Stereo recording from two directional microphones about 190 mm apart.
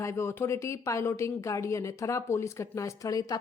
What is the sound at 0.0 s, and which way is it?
Speech, 15° left (ahead or behind).